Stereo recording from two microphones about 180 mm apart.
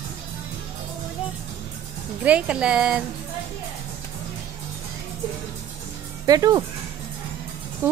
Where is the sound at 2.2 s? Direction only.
5° right (ahead or behind).